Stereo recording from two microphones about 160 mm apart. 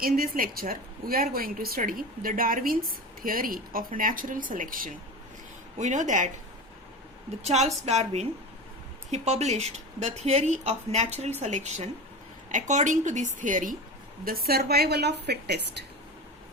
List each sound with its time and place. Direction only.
0.0 s a woman's voice: 65° right (ahead or behind)
5.7 s speech: 50° right (ahead or behind)
7.4 s speech: 45° right (ahead or behind)
14.3 s a woman's voice: 65° right (ahead or behind); by 15.8 s 90° right